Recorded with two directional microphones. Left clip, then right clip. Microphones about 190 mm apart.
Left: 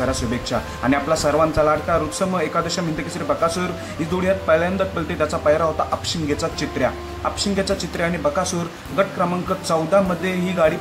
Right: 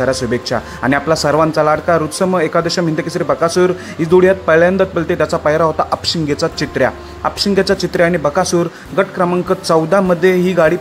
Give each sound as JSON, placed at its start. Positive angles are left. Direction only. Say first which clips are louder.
{"t": 0.0, "sound": "speech", "louder": "right 7 dB", "side_deg": -40}